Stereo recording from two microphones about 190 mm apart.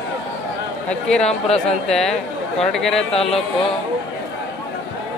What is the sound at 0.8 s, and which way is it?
Speech, 5° left (ahead or behind).